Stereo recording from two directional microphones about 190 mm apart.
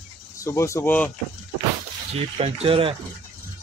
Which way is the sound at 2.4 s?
30° right (ahead or behind).